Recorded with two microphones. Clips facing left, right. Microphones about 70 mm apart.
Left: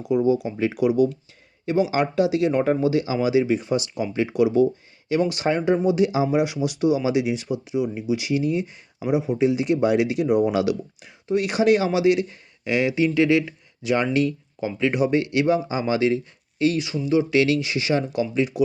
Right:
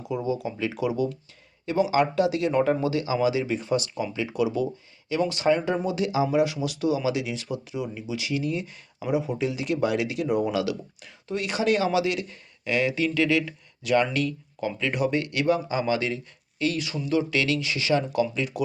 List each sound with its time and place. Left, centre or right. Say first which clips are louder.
0.1 s speech: left 8 dB; left
1.9 s speech: left 1 dB; left
4.1 s speech: left 7 dB; left
6.3 s speech: left 2 dB; centre
7.9 s speech: left 6 dB; left
9.4 s speech: left 6 dB; centre
10.2 s speech: left 4 dB; centre
10.6 s speech: left 5 dB; centre
16.8 s speech: left 4 dB; centre